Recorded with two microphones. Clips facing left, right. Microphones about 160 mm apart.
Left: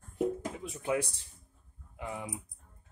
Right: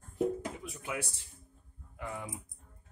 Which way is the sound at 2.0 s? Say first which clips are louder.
Left 1 dB; 20° left (ahead or behind).